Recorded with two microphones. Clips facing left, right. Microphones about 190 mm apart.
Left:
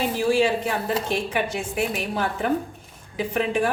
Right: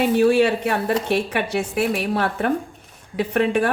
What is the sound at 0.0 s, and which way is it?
A woman's voice, 60° right (ahead or behind).